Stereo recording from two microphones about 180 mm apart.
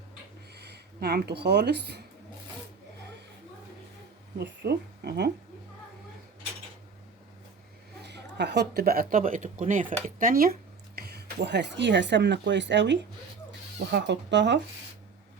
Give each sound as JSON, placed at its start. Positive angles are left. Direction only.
{"t": 0.5, "sound": "speech", "side_deg": -65}
{"t": 4.4, "sound": "speech", "side_deg": -65}
{"t": 8.0, "sound": "speech", "side_deg": -70}